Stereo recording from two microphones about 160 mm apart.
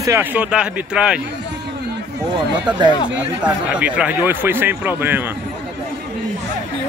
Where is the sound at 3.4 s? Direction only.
10° right (ahead or behind).